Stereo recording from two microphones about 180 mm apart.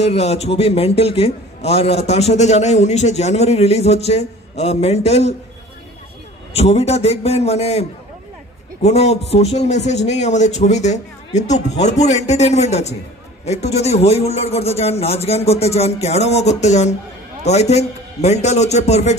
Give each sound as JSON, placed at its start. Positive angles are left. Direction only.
{"t": 0.0, "sound": "a man's voice", "side_deg": 35}
{"t": 6.5, "sound": "a man's voice", "side_deg": 35}
{"t": 8.8, "sound": "a man's voice", "side_deg": 35}